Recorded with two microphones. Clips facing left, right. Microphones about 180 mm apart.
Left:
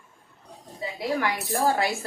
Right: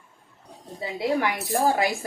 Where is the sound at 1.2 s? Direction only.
15° right (ahead or behind).